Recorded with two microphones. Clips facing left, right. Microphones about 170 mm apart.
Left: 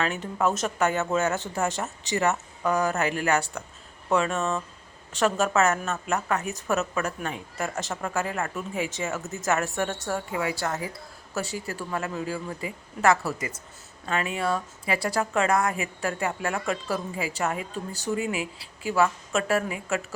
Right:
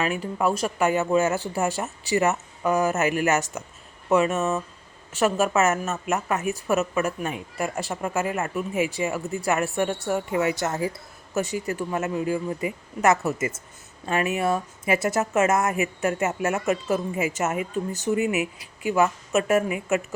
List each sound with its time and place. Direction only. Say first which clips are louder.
0.0 s a woman's voice: right 2 dB; 10° right (ahead or behind)
18.2 s speech: right 5 dB; 35° left (ahead or behind)
18.9 s a woman's voice: right 2 dB; 20° right (ahead or behind)